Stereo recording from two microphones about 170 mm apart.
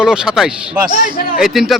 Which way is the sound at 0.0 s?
5° right (ahead or behind).